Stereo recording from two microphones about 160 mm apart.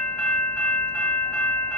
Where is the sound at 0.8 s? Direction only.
10° left (ahead or behind).